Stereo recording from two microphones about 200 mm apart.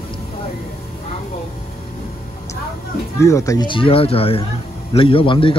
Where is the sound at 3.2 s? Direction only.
15° left (ahead or behind).